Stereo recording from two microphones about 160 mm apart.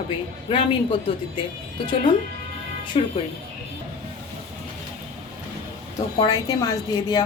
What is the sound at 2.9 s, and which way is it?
Speech, 35° left (ahead or behind).